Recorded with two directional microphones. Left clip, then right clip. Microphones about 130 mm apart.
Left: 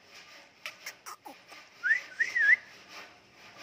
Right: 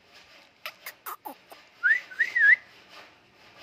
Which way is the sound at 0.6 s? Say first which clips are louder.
Right 2 dB; 65° right (ahead or behind).